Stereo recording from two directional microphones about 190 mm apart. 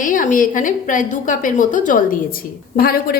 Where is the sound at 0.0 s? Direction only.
45° left (ahead or behind).